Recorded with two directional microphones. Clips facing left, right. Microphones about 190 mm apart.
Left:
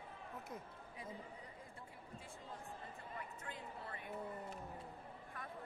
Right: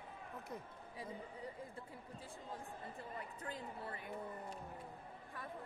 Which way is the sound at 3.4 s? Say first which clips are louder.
Right 3 dB; 35° right (ahead or behind).